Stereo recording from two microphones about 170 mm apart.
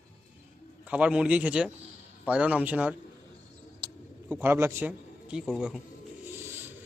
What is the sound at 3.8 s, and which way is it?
Bird, 30° right (ahead or behind).